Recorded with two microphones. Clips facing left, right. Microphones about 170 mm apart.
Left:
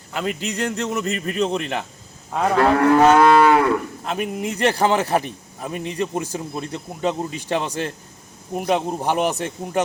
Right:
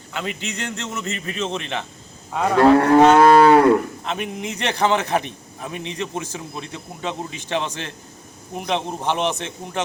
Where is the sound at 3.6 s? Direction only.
40° right (ahead or behind).